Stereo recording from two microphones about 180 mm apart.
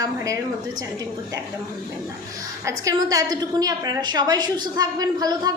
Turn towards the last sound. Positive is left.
turn(degrees=-20)  # may be behind; listen again after turning